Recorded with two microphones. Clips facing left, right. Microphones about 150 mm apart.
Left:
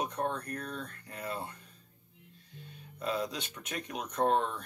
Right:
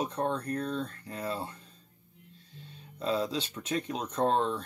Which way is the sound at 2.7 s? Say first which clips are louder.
Right 4 dB; 30° right (ahead or behind).